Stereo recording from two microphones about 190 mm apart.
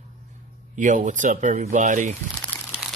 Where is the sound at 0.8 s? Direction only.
40° right (ahead or behind).